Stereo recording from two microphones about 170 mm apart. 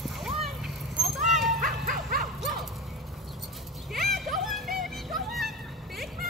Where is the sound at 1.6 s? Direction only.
50° right (ahead or behind).